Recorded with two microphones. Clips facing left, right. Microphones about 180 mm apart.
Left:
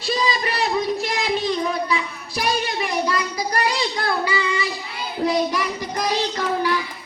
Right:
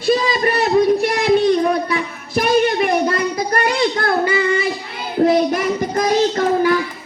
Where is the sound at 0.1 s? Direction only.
50° right (ahead or behind).